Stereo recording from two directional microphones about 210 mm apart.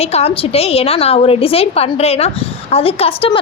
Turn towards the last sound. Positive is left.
turn(degrees=25)  # may be behind; listen again after turning